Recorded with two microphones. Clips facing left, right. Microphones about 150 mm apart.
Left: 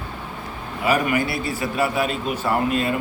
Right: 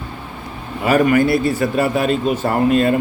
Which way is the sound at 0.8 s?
45° right (ahead or behind).